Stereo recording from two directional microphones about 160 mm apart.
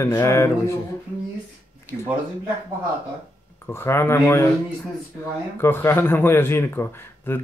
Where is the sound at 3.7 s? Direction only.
15° left (ahead or behind).